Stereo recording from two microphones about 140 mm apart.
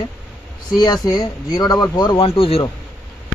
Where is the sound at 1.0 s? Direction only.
30° left (ahead or behind).